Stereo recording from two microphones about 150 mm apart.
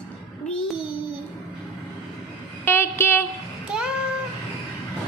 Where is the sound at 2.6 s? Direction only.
15° left (ahead or behind).